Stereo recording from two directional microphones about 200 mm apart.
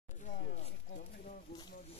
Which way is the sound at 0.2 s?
40° left (ahead or behind).